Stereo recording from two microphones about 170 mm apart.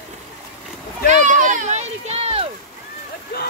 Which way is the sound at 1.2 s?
50° right (ahead or behind).